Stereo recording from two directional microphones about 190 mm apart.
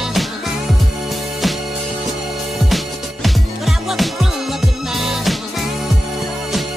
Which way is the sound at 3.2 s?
Centre (ahead or behind).